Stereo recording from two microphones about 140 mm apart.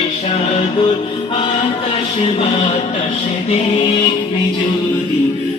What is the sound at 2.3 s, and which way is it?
Music, 45° left (ahead or behind).